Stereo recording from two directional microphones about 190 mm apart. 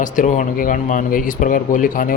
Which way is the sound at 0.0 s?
45° left (ahead or behind).